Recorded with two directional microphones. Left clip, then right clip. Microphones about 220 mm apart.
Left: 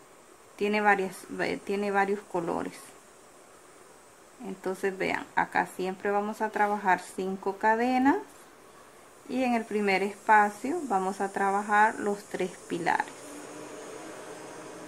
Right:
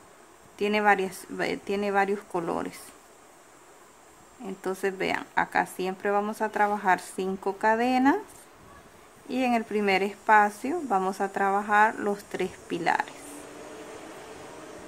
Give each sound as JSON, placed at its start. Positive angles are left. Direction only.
{"t": 0.6, "sound": "speech", "side_deg": -10}
{"t": 4.5, "sound": "speech", "side_deg": -10}
{"t": 9.3, "sound": "speech", "side_deg": -10}